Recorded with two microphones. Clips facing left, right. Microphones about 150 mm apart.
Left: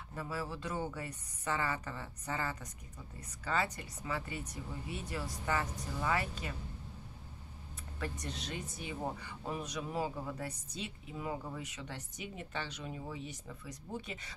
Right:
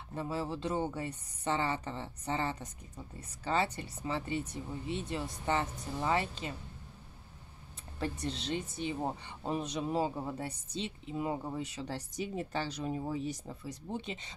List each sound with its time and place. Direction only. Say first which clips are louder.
0.1 s speech: right 5 dB; 25° right (ahead or behind)
8.0 s speech: right 5 dB; 30° right (ahead or behind)